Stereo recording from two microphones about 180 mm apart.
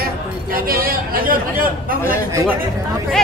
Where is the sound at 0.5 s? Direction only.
55° right (ahead or behind).